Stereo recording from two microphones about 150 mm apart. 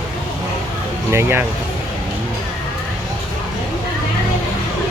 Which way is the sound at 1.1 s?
15° right (ahead or behind).